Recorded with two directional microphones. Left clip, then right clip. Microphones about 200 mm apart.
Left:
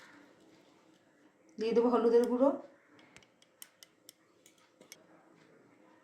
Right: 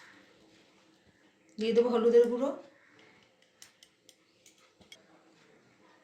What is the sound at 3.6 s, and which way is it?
Scissors, 65° left (ahead or behind).